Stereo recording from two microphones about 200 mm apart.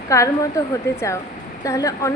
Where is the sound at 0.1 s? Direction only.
15° left (ahead or behind).